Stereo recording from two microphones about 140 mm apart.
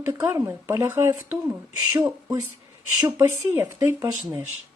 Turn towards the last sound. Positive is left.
turn(degrees=-20)  # may be behind; listen again after turning